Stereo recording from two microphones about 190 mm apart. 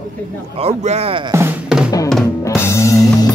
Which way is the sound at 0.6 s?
35° right (ahead or behind).